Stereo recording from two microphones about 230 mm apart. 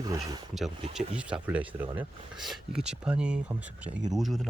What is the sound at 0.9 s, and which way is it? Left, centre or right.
Speech, centre.